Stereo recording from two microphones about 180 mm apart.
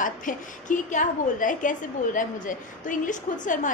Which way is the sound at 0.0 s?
45° left (ahead or behind).